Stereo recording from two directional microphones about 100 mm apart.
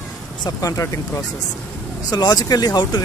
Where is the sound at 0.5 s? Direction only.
35° left (ahead or behind).